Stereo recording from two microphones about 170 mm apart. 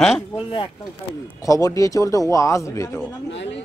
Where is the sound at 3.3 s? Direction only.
90° left.